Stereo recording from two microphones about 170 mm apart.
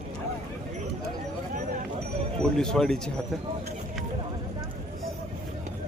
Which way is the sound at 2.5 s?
5° left (ahead or behind).